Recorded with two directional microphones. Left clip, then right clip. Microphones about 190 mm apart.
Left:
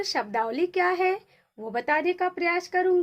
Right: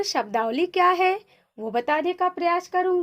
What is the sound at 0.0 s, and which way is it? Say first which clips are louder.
Speech: right 3 dB; 25° right (ahead or behind).